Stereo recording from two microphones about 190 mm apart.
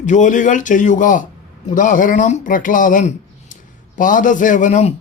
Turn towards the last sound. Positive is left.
turn(degrees=40)  # may be behind; listen again after turning